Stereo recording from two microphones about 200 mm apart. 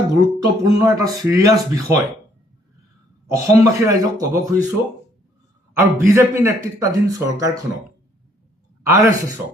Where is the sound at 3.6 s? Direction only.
15° right (ahead or behind).